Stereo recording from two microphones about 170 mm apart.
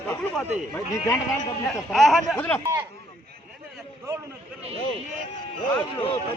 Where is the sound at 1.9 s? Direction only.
Centre (ahead or behind).